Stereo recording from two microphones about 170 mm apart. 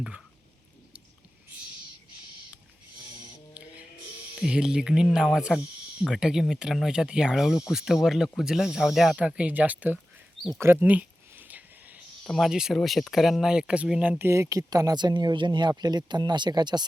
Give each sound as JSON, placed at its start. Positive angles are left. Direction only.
{"t": 4.4, "sound": "speech", "side_deg": -5}
{"t": 10.6, "sound": "a sound", "side_deg": -10}
{"t": 12.2, "sound": "speech", "side_deg": 0}